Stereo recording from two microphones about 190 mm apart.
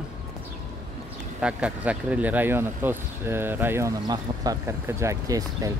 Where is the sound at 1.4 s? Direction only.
5° right (ahead or behind).